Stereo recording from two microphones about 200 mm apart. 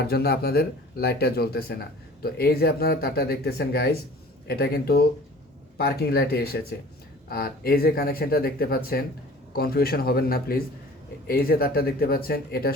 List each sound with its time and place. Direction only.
0.0 s speech: 50° left (ahead or behind)